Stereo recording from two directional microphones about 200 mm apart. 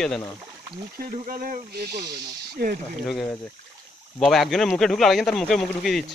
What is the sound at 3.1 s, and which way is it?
Speech, centre (ahead or behind).